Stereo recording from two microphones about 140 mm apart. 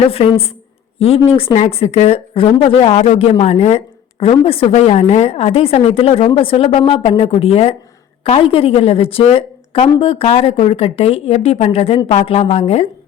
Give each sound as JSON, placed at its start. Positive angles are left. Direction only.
{"t": 0.0, "sound": "speech", "side_deg": 45}